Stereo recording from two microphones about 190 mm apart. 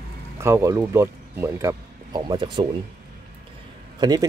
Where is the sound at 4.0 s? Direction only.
20° right (ahead or behind).